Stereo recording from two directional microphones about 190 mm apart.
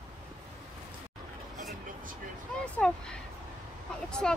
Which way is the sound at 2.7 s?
5° left (ahead or behind).